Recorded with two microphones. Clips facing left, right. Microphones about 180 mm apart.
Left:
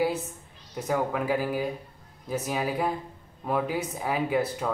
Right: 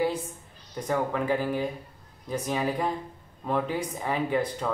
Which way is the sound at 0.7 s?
5° left (ahead or behind).